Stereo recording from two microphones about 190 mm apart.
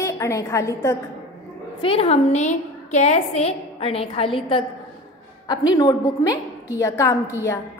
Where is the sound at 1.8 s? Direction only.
30° left (ahead or behind).